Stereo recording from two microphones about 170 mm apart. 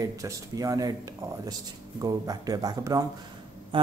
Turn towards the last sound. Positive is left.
turn(degrees=-30)  # may be behind; listen again after turning